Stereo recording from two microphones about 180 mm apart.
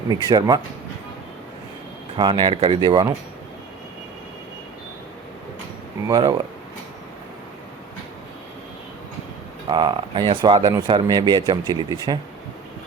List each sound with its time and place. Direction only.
0.1 s speech: 20° right (ahead or behind)
2.1 s speech: 25° right (ahead or behind)
6.1 s speech: 20° right (ahead or behind)
9.6 s speech: 25° right (ahead or behind)